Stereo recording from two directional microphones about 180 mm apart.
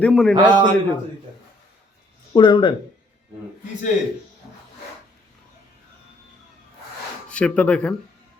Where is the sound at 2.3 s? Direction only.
25° left (ahead or behind).